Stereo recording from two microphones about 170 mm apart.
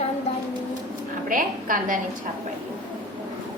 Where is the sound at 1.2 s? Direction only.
55° right (ahead or behind).